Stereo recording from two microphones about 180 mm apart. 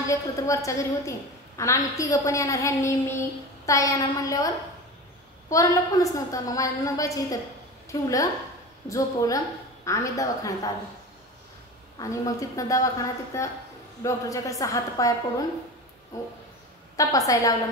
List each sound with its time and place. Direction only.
0.0 s a woman's voice: 15° left (ahead or behind)
5.5 s a woman's voice: 20° left (ahead or behind)
12.0 s a woman's voice: 20° left (ahead or behind)
16.9 s a woman's voice: 20° left (ahead or behind)